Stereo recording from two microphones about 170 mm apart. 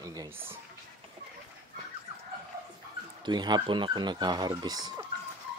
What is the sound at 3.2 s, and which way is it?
Speech, 25° right (ahead or behind).